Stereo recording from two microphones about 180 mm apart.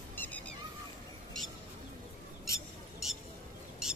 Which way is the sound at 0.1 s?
10° left (ahead or behind).